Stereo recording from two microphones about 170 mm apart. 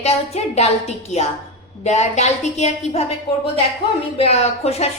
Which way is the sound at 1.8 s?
40° left (ahead or behind).